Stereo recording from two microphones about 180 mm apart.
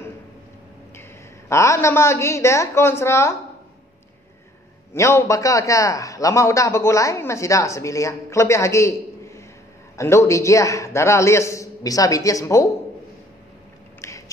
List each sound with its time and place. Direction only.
1.5 s a man's voice: 15° left (ahead or behind)
4.9 s a man's voice: 15° left (ahead or behind)
14.0 s a sound: 15° left (ahead or behind)